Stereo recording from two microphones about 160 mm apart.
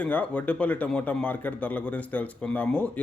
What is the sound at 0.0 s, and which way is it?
A man's voice, 10° left (ahead or behind).